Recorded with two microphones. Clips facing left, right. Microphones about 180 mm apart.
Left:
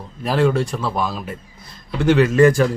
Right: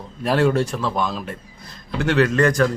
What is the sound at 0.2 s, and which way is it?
A man's voice, centre (ahead or behind).